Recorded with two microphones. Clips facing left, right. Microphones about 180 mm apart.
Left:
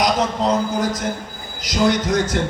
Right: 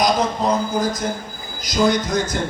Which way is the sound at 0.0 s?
80° left.